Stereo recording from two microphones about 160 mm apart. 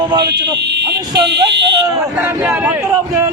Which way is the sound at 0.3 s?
90° right.